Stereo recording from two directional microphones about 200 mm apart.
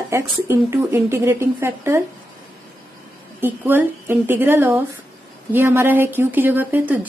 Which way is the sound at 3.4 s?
10° right (ahead or behind).